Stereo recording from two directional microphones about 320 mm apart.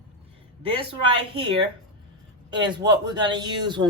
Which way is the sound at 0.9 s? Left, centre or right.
Centre.